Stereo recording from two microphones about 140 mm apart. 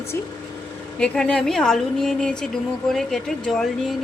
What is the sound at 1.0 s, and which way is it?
Speech, 5° left (ahead or behind).